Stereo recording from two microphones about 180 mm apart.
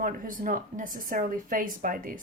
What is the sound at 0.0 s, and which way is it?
Speech, 50° right (ahead or behind).